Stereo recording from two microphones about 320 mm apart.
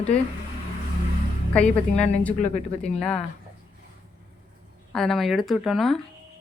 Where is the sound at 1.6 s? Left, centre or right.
Centre.